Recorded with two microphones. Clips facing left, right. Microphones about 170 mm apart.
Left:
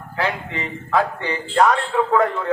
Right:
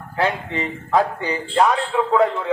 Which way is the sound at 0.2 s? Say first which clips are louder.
Right 3 dB; 20° right (ahead or behind).